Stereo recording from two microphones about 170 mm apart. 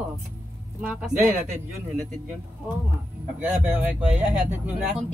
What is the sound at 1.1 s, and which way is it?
Speech, 45° right (ahead or behind).